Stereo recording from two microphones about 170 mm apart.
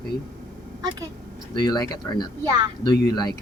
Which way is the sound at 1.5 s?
25° left (ahead or behind).